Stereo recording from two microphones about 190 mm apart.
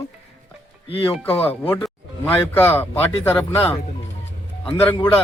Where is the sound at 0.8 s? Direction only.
30° left (ahead or behind).